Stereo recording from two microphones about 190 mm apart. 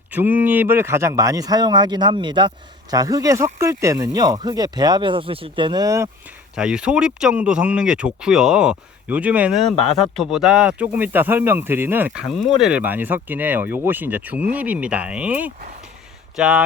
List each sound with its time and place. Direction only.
0.1 s speech: 10° right (ahead or behind)
6.6 s speech: 5° right (ahead or behind)